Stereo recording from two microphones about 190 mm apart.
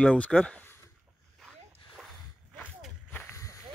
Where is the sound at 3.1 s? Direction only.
15° left (ahead or behind).